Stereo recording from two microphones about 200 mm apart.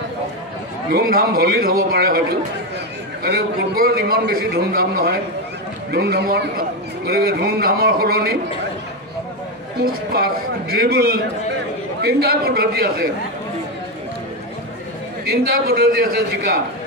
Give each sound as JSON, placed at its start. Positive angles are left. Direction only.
{"t": 0.9, "sound": "a man's voice", "side_deg": -50}
{"t": 3.3, "sound": "a man's voice", "side_deg": -50}
{"t": 9.8, "sound": "a man's voice", "side_deg": -50}
{"t": 15.2, "sound": "a man's voice", "side_deg": -50}